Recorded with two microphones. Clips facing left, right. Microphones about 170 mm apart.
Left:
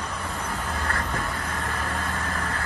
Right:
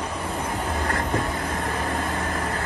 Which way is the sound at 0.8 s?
35° right (ahead or behind).